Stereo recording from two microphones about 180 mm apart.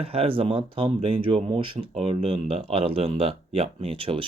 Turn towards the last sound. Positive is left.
turn(degrees=-30)  # may be behind; listen again after turning